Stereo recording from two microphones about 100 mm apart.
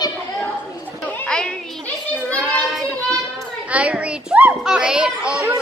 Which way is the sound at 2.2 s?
10° left (ahead or behind).